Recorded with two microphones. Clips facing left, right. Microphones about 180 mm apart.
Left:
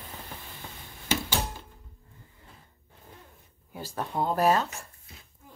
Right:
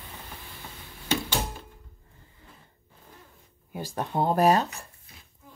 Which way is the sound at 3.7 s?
20° right (ahead or behind).